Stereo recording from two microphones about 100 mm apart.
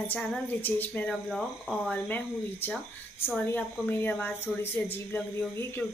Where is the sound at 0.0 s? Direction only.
15° left (ahead or behind).